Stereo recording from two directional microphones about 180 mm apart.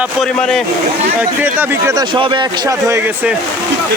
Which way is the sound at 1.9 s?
25° right (ahead or behind).